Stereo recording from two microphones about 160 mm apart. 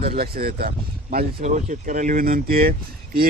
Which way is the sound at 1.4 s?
55° right (ahead or behind).